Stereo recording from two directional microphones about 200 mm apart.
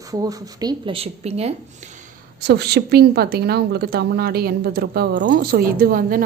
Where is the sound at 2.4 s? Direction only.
55° right (ahead or behind).